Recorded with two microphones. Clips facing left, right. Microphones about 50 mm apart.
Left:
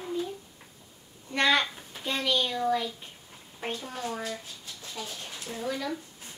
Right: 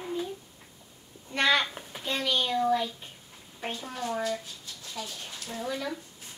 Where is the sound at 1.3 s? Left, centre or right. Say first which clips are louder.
Even; centre.